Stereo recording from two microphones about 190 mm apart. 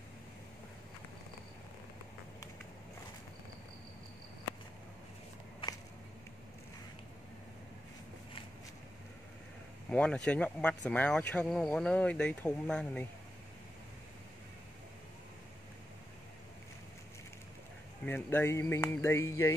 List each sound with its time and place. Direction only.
5.6 s a sound: 25° left (ahead or behind)
9.8 s speech: 5° left (ahead or behind)
18.0 s speech: 10° left (ahead or behind)